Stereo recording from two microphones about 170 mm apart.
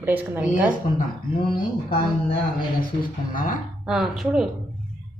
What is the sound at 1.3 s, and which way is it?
Speech, 30° left (ahead or behind).